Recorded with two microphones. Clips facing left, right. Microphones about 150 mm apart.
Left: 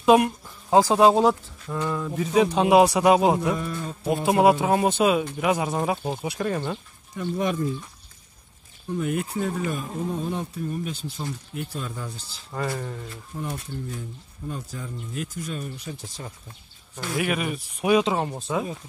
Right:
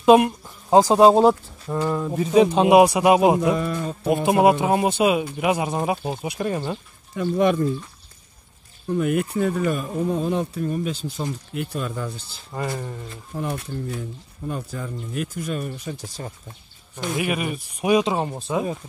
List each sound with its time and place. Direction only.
0.0 s speech: 25° right (ahead or behind)
0.9 s speech: 35° right (ahead or behind); by 3.5 s 15° right (ahead or behind)
3.5 s speech: 90° right
4.1 s speech: 15° right (ahead or behind)
7.2 s speech: 75° right (ahead or behind)
8.9 s speech: 65° right (ahead or behind)
12.8 s speech: 15° right (ahead or behind)
13.3 s speech: 70° right (ahead or behind); by 16.3 s 45° right (ahead or behind)
16.9 s speech: 15° right (ahead or behind)